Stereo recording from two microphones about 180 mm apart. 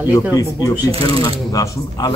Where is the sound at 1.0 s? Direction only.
20° left (ahead or behind).